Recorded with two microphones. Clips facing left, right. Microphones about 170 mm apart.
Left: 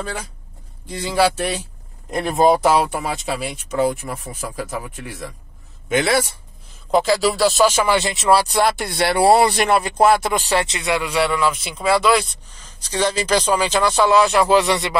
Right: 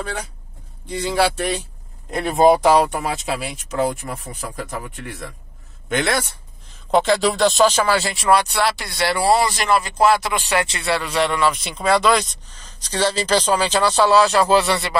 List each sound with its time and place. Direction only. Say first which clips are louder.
0.8 s speech: left 1 dB; centre (ahead or behind); by 8.5 s 30° left (ahead or behind)
8.6 s speech: left 2 dB; 55° left (ahead or behind)
10.4 s speech: left 1 dB; 30° left (ahead or behind)
10.8 s speech: left 1 dB; 15° left (ahead or behind)